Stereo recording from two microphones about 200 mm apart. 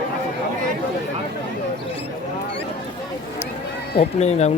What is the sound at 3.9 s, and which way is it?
Speech, 35° left (ahead or behind).